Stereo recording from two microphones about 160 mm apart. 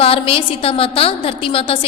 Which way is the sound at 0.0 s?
35° left (ahead or behind).